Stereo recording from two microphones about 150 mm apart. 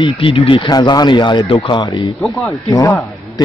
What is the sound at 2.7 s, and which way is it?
Speech, 20° left (ahead or behind).